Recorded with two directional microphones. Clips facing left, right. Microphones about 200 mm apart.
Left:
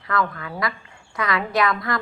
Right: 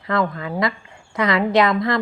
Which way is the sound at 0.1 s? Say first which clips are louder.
Right 4 dB; 25° right (ahead or behind).